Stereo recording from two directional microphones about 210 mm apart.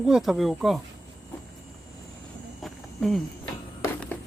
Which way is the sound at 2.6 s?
Centre (ahead or behind).